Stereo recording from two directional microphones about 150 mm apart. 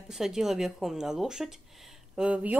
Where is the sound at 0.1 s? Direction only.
5° right (ahead or behind).